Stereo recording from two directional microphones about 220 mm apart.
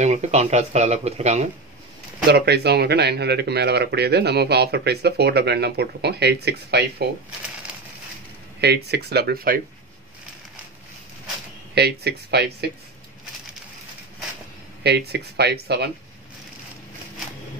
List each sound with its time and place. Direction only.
0.0 s speech: 30° right (ahead or behind)
2.3 s speech: 50° right (ahead or behind)
8.5 s speech: 50° right (ahead or behind)
11.7 s speech: 50° right (ahead or behind)
14.8 s speech: 50° right (ahead or behind)